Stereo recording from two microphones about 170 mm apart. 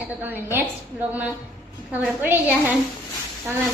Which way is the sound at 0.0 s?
10° right (ahead or behind).